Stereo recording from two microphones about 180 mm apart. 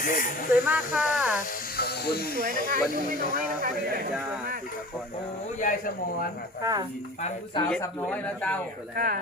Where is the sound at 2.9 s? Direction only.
50° left (ahead or behind).